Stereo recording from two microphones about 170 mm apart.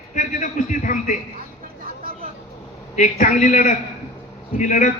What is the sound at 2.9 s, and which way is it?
A man's voice, 45° left (ahead or behind).